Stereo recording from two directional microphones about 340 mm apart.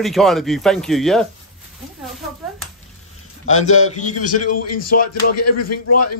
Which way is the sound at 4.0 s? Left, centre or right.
Left.